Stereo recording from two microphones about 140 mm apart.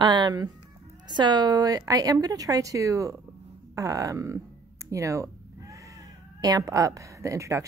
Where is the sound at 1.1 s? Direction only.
30° right (ahead or behind).